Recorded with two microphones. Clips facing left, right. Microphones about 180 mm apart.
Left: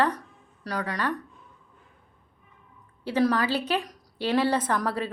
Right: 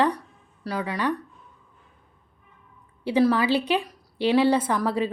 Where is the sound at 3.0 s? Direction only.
10° right (ahead or behind).